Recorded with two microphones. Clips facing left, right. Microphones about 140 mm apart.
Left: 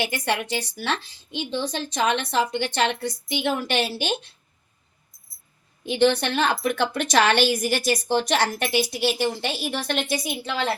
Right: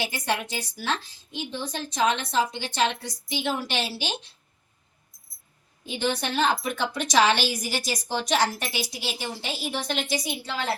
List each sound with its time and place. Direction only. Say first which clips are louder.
0.0 s a woman's voice: left 3 dB; 70° left (ahead or behind)
5.8 s a woman's voice: left 8 dB; 65° left (ahead or behind)